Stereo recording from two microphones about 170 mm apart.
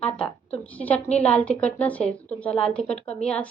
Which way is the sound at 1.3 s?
5° left (ahead or behind).